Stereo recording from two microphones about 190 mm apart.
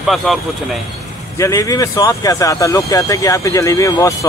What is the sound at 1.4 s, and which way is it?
Speech, 15° left (ahead or behind).